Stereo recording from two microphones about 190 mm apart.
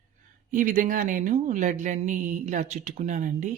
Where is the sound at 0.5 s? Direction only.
45° right (ahead or behind).